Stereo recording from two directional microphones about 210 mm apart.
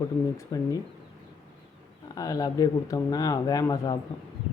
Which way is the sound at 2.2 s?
15° left (ahead or behind).